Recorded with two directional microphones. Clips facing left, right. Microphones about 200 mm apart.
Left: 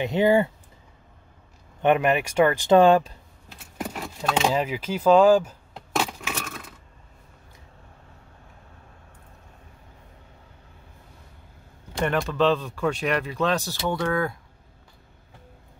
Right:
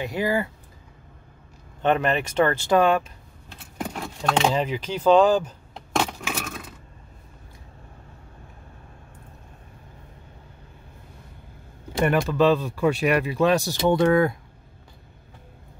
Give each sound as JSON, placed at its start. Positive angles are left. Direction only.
{"t": 0.0, "sound": "speech", "side_deg": 25}
{"t": 1.8, "sound": "speech", "side_deg": 15}
{"t": 2.8, "sound": "speech", "side_deg": 30}
{"t": 3.4, "sound": "speech", "side_deg": 5}
{"t": 6.2, "sound": "a sound", "side_deg": -10}
{"t": 12.0, "sound": "speech", "side_deg": -5}